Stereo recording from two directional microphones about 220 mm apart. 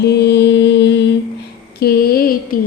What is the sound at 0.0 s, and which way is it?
Mantra, 50° left (ahead or behind).